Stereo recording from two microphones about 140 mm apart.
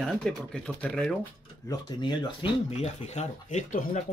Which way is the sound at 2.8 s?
55° left (ahead or behind).